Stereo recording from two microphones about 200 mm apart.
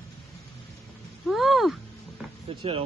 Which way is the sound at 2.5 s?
30° right (ahead or behind).